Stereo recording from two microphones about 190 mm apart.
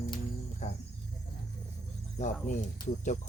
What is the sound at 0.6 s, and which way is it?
Speech, 40° left (ahead or behind).